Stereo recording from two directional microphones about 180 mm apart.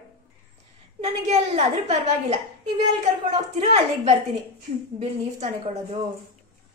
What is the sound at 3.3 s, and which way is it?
Speech, 40° right (ahead or behind).